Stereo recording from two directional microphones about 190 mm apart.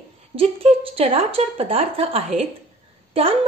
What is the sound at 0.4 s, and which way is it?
A woman's voice, 30° right (ahead or behind).